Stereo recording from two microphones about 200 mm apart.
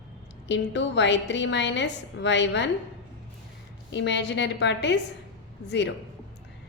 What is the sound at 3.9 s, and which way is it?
A woman's voice, 60° left (ahead or behind).